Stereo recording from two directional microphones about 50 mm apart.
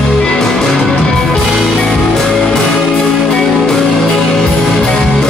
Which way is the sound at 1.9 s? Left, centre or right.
Centre.